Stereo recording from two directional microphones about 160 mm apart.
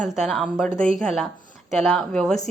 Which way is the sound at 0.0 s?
Centre (ahead or behind).